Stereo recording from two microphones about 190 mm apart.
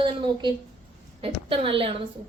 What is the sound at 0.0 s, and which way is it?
A woman's voice, 25° right (ahead or behind).